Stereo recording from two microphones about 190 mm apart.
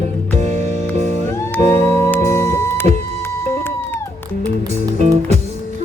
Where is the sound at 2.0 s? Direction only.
15° left (ahead or behind).